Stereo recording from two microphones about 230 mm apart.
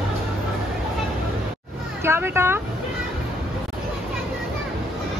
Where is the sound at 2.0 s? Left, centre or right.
Centre.